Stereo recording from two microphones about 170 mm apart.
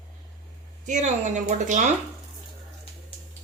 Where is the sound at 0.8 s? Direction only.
45° right (ahead or behind).